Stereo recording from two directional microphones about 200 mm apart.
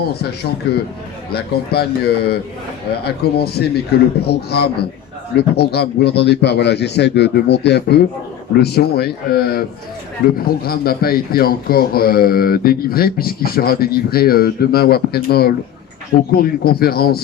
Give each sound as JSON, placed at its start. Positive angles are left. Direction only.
{"t": 0.0, "sound": "a man's voice", "side_deg": 50}